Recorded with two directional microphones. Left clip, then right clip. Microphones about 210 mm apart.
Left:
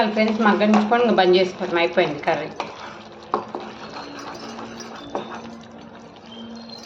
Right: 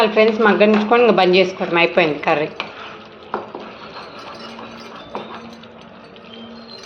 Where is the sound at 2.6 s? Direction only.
Centre (ahead or behind).